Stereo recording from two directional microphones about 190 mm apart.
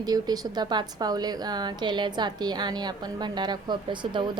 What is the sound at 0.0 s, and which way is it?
A woman's voice, 20° right (ahead or behind).